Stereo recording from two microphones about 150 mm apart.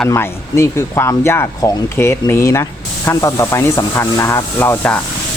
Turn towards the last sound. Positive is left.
turn(degrees=15)  # may be behind; listen again after turning